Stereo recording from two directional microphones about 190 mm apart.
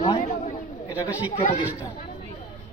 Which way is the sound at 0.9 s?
10° right (ahead or behind).